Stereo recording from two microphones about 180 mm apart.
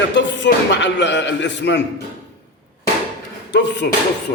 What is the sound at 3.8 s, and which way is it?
Music, 60° left (ahead or behind).